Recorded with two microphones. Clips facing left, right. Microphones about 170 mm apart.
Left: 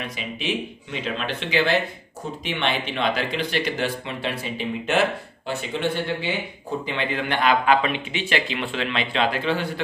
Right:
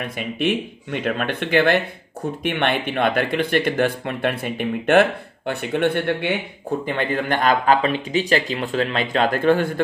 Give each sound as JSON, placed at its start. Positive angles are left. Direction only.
{"t": 0.0, "sound": "speech", "side_deg": -55}
{"t": 6.9, "sound": "speech", "side_deg": -45}